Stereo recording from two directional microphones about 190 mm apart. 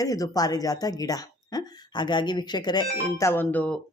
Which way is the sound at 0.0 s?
20° left (ahead or behind).